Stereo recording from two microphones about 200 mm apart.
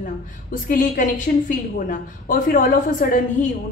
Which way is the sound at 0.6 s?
40° left (ahead or behind).